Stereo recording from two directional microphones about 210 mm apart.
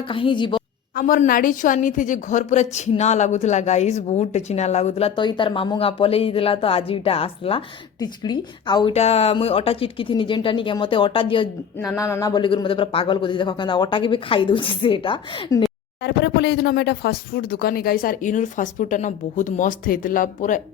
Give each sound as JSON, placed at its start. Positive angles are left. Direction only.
{"t": 0.1, "sound": "a woman's voice", "side_deg": 25}
{"t": 0.9, "sound": "a woman's voice", "side_deg": 40}
{"t": 11.9, "sound": "a woman's voice", "side_deg": 15}
{"t": 16.0, "sound": "speech", "side_deg": 55}